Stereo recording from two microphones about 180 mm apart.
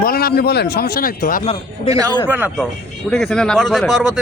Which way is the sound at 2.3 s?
10° right (ahead or behind).